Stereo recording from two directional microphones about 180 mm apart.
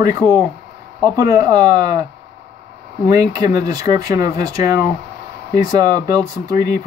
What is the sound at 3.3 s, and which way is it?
Speech, 20° right (ahead or behind).